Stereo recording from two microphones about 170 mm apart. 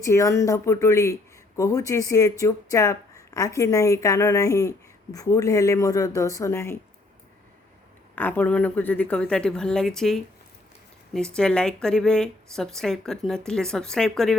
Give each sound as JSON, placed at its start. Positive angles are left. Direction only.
{"t": 0.0, "sound": "a woman's voice", "side_deg": 15}
{"t": 8.1, "sound": "speech", "side_deg": 10}